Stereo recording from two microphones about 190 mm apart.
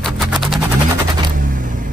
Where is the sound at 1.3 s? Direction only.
45° right (ahead or behind).